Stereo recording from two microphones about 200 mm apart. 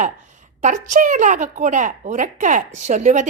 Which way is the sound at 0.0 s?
35° right (ahead or behind).